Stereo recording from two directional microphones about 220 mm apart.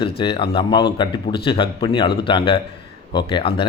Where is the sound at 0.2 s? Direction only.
20° left (ahead or behind).